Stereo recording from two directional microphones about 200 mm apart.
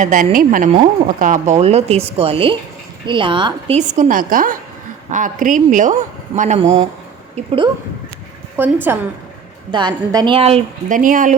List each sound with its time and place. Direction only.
0.0 s a woman's voice: 40° right (ahead or behind); by 3.8 s 25° right (ahead or behind)
3.8 s a woman's voice: 35° right (ahead or behind)
8.5 s a woman's voice: 10° right (ahead or behind); by 11.3 s 40° right (ahead or behind)